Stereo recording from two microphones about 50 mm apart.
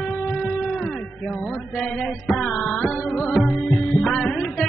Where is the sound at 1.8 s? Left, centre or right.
Centre.